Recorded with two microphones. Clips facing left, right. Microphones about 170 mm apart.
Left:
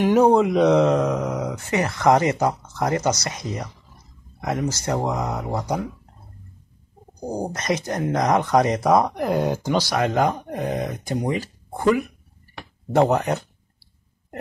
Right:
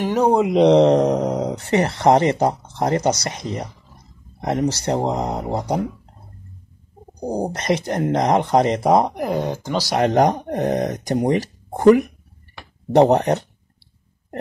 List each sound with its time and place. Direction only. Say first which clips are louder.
0.0 s speech: left 3 dB; 5° left (ahead or behind)
0.5 s speech: right 4 dB; 30° right (ahead or behind)
7.2 s speech: right 4 dB; 35° right (ahead or behind)
9.1 s speech: even; 5° right (ahead or behind)
9.4 s speech: left 2 dB; 10° left (ahead or behind)
9.9 s speech: right 8 dB; 40° right (ahead or behind)
13.0 s speech: right 4 dB; 35° right (ahead or behind)